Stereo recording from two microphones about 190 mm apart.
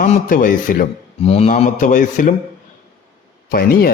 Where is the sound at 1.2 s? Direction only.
30° left (ahead or behind).